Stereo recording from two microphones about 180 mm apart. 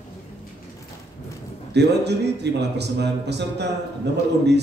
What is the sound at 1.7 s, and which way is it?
Speech, 70° right (ahead or behind).